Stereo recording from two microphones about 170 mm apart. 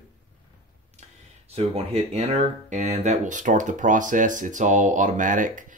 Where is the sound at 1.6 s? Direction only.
35° right (ahead or behind).